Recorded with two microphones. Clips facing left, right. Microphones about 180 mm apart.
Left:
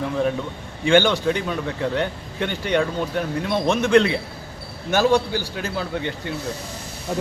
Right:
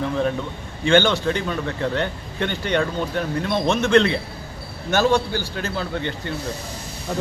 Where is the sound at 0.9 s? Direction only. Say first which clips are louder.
Even; 10° left (ahead or behind).